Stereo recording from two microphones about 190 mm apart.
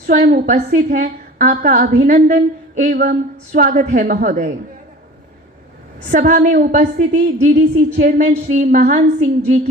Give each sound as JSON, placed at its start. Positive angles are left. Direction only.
{"t": 0.0, "sound": "a woman's voice", "side_deg": -45}
{"t": 6.1, "sound": "a woman's voice", "side_deg": -45}